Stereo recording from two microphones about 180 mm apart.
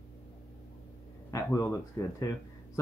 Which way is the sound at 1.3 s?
15° left (ahead or behind).